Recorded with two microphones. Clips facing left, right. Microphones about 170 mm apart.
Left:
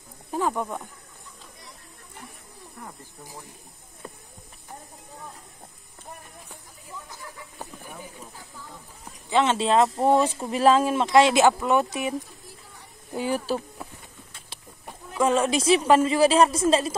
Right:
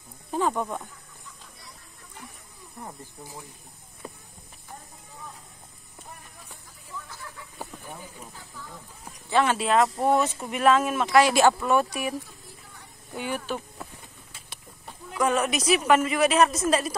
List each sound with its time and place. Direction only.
0.3 s speech: 10° left (ahead or behind)
2.8 s speech: 20° right (ahead or behind)
9.3 s speech: 25° left (ahead or behind)
13.1 s speech: 35° left (ahead or behind)
15.1 s speech: 25° left (ahead or behind)